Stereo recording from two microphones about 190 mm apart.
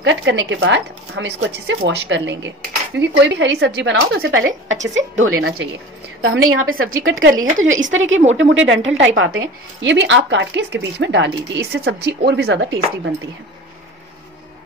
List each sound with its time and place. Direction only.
0.0 s a woman's voice: 75° right (ahead or behind); by 8.2 s 90° right
8.4 s a woman's voice: 80° right; by 13.1 s 60° right (ahead or behind)